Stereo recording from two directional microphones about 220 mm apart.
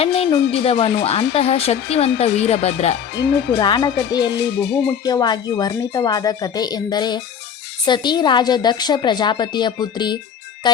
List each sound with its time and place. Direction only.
0.0 s a woman's voice: 25° left (ahead or behind)
3.2 s speech: 50° left (ahead or behind)
3.6 s a woman's voice: 20° left (ahead or behind)
4.2 s speech: 50° left (ahead or behind)
5.0 s a woman's voice: 15° left (ahead or behind)